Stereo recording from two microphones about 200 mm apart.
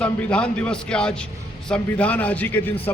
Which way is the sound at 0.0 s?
5° left (ahead or behind).